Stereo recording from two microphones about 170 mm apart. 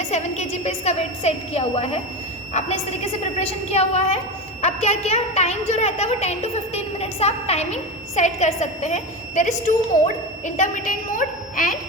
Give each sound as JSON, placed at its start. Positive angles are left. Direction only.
{"t": 0.0, "sound": "a woman's voice", "side_deg": 40}